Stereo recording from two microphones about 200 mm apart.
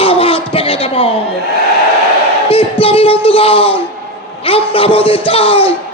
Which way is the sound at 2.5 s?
25° left (ahead or behind).